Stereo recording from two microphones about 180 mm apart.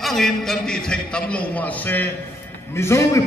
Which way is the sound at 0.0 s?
Centre (ahead or behind).